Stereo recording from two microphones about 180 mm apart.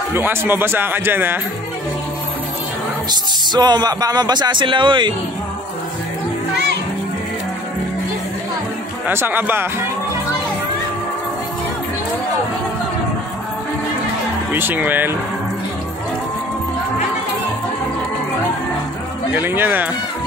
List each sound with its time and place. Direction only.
0.1 s a man's voice: 10° right (ahead or behind)
3.1 s speech: 25° right (ahead or behind)
9.0 s a man's voice: 10° right (ahead or behind)
14.5 s a man's voice: 10° right (ahead or behind)
19.4 s a man's voice: 10° right (ahead or behind)